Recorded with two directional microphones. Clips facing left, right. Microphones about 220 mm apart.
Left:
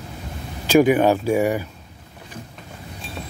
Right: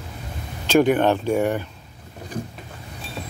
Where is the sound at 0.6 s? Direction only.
10° left (ahead or behind).